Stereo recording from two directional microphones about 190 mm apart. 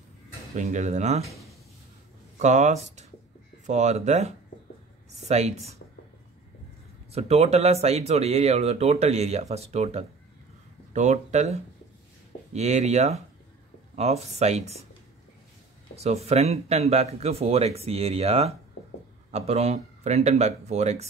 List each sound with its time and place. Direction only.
0.6 s speech: 40° right (ahead or behind)
2.3 s speech: 40° right (ahead or behind)
5.3 s speech: 35° right (ahead or behind)
7.1 s speech: 35° right (ahead or behind)
16.0 s speech: 35° right (ahead or behind)